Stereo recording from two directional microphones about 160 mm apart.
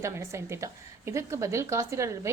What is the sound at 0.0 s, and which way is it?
A woman's voice, 15° right (ahead or behind).